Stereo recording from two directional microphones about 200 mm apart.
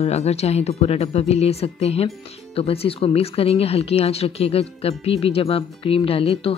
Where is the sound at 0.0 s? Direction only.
30° left (ahead or behind).